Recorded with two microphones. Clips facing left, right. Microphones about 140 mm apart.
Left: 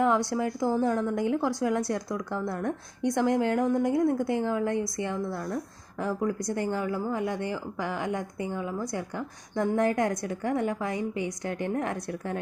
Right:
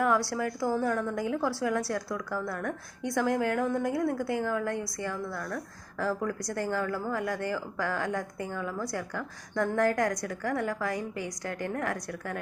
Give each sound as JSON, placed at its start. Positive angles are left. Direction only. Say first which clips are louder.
{"t": 0.0, "sound": "speech", "louder": "left 2 dB", "side_deg": 20}